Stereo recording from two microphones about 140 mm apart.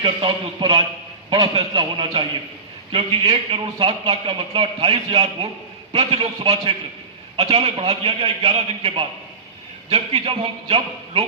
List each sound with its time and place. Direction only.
0.0 s a man's voice: 35° right (ahead or behind)